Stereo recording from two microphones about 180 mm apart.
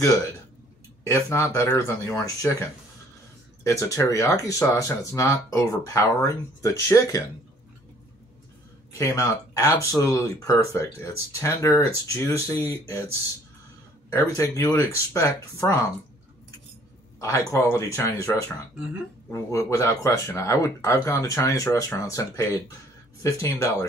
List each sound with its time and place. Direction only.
1.0 s speech: 15° left (ahead or behind)
3.6 s speech: 15° left (ahead or behind)
8.9 s speech: 15° left (ahead or behind)
17.2 s speech: 15° left (ahead or behind)